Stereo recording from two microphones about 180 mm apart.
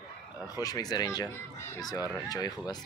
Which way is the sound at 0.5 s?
20° left (ahead or behind).